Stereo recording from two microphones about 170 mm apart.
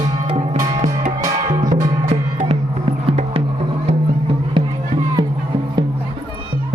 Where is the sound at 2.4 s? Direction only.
35° right (ahead or behind).